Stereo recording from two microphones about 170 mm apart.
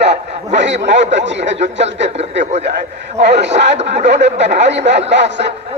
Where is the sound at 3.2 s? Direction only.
90° right.